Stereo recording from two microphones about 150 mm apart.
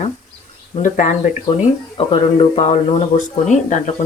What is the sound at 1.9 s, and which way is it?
Speech, 35° left (ahead or behind).